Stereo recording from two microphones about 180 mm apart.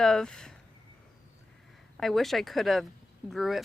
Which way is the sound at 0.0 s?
5° left (ahead or behind).